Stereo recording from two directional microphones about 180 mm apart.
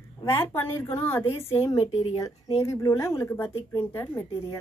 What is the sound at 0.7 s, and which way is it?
A woman's voice, 10° left (ahead or behind).